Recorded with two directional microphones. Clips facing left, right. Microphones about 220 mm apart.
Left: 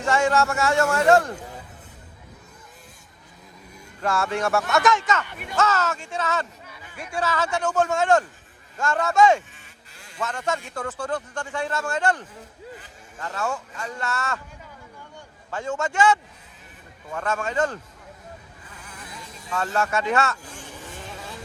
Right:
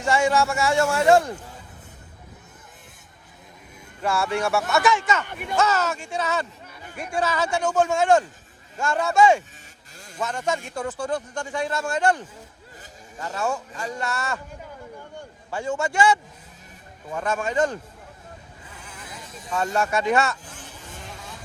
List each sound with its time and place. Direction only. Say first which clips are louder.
0.0 s a man's voice: even; 10° right (ahead or behind)
4.0 s a man's voice: even; 10° right (ahead or behind)
5.2 s speech: right 5 dB; 50° right (ahead or behind)
5.5 s a man's voice: right 1 dB; 15° right (ahead or behind)
6.8 s a sound: right 4 dB; 45° right (ahead or behind)
7.2 s a man's voice: right 1 dB; 15° right (ahead or behind)
15.4 s a man's voice: right 1 dB; 10° right (ahead or behind)
19.5 s a man's voice: right 1 dB; 15° right (ahead or behind)